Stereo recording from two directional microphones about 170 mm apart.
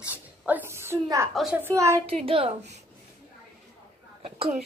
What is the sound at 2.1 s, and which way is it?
Speech, 35° right (ahead or behind).